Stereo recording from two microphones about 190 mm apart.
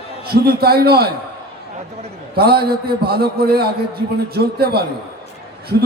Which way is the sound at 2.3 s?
55° right (ahead or behind).